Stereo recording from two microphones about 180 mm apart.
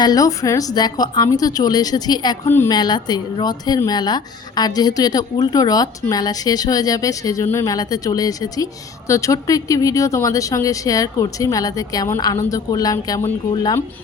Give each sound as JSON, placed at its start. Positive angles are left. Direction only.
{"t": 0.0, "sound": "speech", "side_deg": 20}
{"t": 2.5, "sound": "speech", "side_deg": 10}
{"t": 2.7, "sound": "speech", "side_deg": 20}